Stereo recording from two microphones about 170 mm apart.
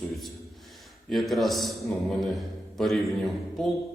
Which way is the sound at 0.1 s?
Centre (ahead or behind).